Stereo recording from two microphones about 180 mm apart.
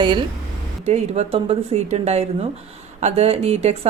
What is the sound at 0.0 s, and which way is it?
Speech, 25° right (ahead or behind).